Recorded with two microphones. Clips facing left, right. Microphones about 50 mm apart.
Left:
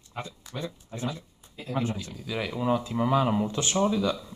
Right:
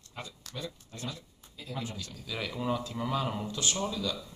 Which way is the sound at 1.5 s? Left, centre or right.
Left.